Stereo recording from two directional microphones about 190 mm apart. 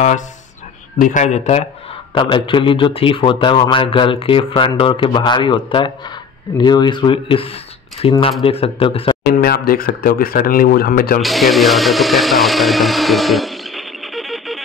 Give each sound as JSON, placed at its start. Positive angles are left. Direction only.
{"t": 0.9, "sound": "a man's voice", "side_deg": 40}
{"t": 9.3, "sound": "speech", "side_deg": 50}
{"t": 11.2, "sound": "speech", "side_deg": 0}